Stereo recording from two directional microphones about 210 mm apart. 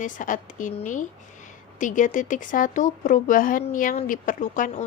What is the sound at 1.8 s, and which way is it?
Speech, 35° left (ahead or behind).